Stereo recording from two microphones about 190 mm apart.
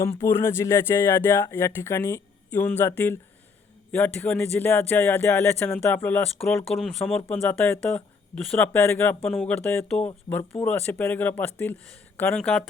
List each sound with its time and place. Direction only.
0.0 s speech: 15° left (ahead or behind)